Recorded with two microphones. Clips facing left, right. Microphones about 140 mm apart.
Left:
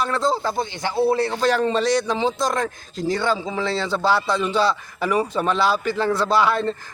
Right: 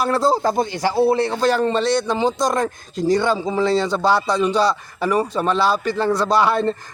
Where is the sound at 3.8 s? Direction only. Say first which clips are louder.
Right 2 dB; 5° left (ahead or behind).